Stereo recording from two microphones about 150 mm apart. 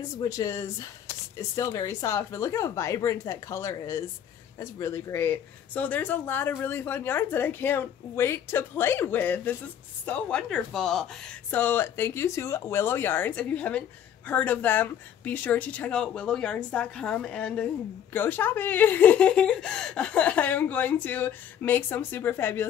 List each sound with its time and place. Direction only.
0.2 s speech: 25° left (ahead or behind)
1.0 s a sound: 20° left (ahead or behind)
1.7 s speech: 25° left (ahead or behind); by 11.3 s centre (ahead or behind)
11.5 s speech: 15° left (ahead or behind)